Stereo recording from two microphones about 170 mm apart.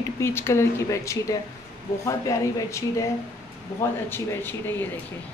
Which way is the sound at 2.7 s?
15° left (ahead or behind).